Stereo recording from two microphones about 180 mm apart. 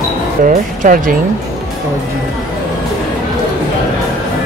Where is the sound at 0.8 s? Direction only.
50° right (ahead or behind).